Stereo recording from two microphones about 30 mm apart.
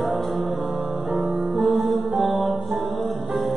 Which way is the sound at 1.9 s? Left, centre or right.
Centre.